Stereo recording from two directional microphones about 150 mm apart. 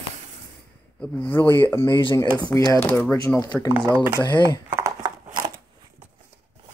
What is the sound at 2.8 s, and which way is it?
Speech, 10° left (ahead or behind).